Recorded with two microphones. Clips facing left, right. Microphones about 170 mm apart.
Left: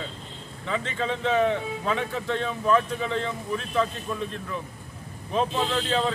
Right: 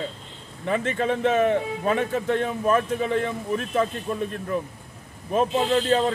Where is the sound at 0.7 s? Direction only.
50° right (ahead or behind).